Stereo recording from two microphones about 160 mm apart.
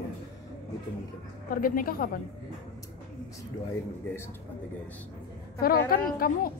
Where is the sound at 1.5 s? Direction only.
60° left (ahead or behind).